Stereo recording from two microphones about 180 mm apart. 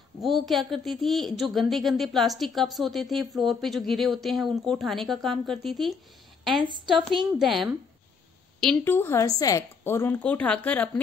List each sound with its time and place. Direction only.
0.2 s a woman's voice: centre (ahead or behind)
6.6 s a woman's voice: 25° right (ahead or behind)
7.3 s a woman's voice: centre (ahead or behind)